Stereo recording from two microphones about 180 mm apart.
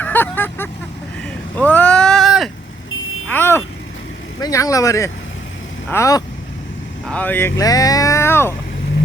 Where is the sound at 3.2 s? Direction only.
10° left (ahead or behind).